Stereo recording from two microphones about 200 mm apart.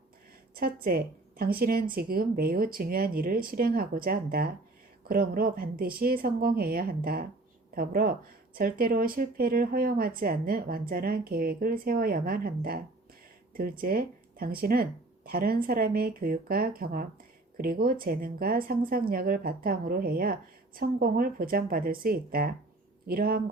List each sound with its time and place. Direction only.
0.5 s a woman's voice: 50° right (ahead or behind)